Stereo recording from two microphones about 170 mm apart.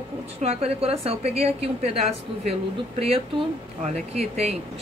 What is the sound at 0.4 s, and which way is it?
A woman's voice, 35° right (ahead or behind).